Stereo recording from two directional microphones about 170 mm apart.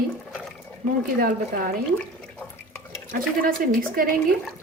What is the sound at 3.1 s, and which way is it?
Speech, 55° right (ahead or behind).